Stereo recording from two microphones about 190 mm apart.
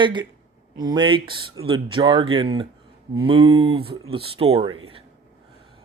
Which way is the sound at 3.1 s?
20° right (ahead or behind).